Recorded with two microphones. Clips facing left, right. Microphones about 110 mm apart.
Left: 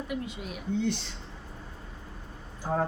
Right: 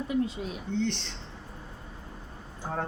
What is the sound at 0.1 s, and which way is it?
Speech, 30° right (ahead or behind).